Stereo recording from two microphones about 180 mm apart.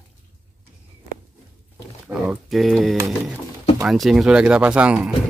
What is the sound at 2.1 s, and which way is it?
Speech, centre (ahead or behind).